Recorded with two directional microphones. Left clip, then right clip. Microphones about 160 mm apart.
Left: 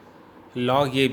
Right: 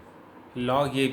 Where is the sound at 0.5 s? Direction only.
55° left (ahead or behind).